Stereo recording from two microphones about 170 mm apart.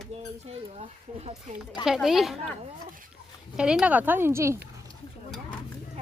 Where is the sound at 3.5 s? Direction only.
5° right (ahead or behind).